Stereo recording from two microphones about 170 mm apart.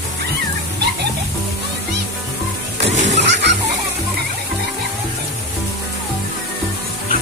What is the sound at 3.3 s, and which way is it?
Chicken, 90° right.